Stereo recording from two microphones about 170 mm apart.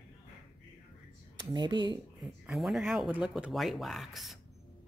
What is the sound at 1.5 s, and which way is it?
Speech, 25° right (ahead or behind).